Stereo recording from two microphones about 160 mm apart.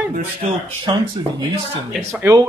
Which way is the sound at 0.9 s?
30° right (ahead or behind).